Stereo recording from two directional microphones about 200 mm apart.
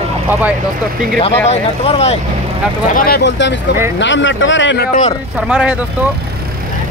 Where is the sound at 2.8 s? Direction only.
45° left (ahead or behind); by 4.9 s 65° left (ahead or behind).